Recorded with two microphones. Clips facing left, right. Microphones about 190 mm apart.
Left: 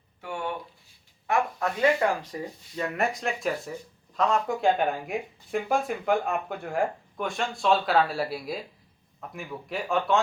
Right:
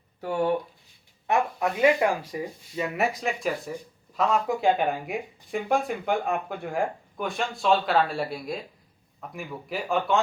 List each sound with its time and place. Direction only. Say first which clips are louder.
0.2 s speech: right 8 dB; 40° right (ahead or behind)
1.3 s speech: right 2 dB; 15° right (ahead or behind); by 10.2 s centre (ahead or behind)